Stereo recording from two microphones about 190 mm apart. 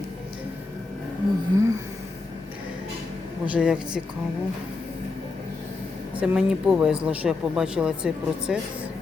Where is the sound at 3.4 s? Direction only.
5° right (ahead or behind).